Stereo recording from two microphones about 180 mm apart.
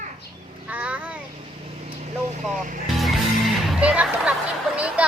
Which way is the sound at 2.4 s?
45° right (ahead or behind).